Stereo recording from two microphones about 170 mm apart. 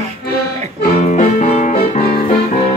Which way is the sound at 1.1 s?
45° left (ahead or behind).